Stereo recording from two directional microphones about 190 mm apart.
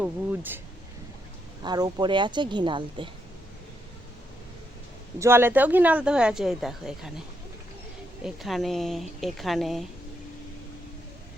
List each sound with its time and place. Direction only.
0.0 s speech: 10° right (ahead or behind)
1.6 s a woman's voice: 20° right (ahead or behind)
5.2 s speech: 10° right (ahead or behind)
8.2 s speech: centre (ahead or behind)